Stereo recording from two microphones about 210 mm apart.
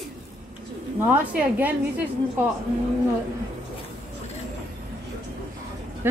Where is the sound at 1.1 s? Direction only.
10° right (ahead or behind).